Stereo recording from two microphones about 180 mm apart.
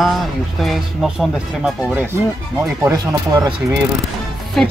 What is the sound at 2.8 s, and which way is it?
Speech, 20° right (ahead or behind).